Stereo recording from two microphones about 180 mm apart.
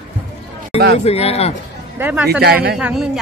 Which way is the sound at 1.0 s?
35° left (ahead or behind).